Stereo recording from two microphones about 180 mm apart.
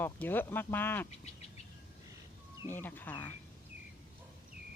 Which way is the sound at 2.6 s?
10° left (ahead or behind).